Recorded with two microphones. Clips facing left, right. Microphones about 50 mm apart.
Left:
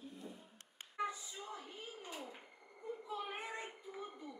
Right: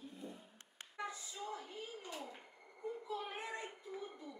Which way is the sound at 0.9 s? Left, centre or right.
Centre.